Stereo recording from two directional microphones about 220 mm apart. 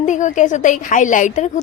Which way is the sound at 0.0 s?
35° left (ahead or behind).